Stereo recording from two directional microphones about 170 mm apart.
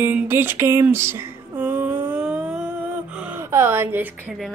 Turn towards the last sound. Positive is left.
turn(degrees=-5)  # may be behind; listen again after turning